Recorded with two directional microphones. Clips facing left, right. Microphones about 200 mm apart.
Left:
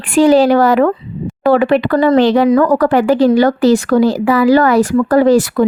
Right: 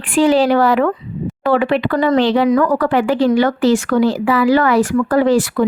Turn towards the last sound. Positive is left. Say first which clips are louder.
# left 4 dB
turn(degrees=40)  # may be behind; listen again after turning